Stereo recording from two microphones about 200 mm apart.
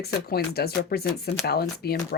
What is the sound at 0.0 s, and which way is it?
Speech, 50° left (ahead or behind).